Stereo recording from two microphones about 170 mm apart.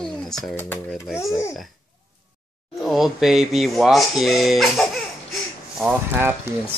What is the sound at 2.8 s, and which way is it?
Speech, centre (ahead or behind).